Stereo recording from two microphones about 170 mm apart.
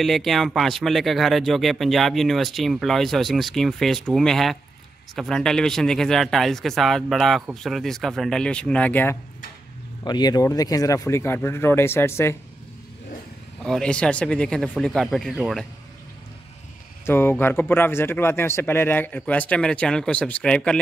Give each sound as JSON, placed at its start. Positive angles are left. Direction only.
{"t": 0.0, "sound": "speech", "side_deg": 0}
{"t": 10.0, "sound": "speech", "side_deg": 25}
{"t": 13.7, "sound": "speech", "side_deg": 5}
{"t": 17.0, "sound": "speech", "side_deg": 15}